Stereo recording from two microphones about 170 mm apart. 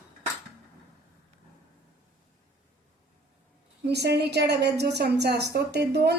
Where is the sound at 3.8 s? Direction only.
75° right (ahead or behind).